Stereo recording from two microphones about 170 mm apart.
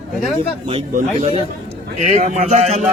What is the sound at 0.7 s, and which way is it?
A man's voice, 35° right (ahead or behind).